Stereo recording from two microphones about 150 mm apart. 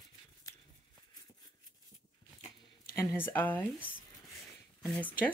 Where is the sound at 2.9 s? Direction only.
15° left (ahead or behind).